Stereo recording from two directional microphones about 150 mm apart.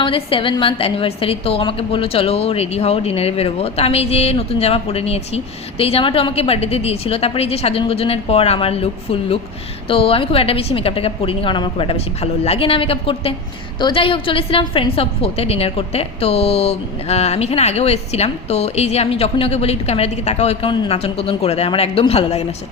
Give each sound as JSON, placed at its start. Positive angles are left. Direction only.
{"t": 0.0, "sound": "a woman's voice", "side_deg": 35}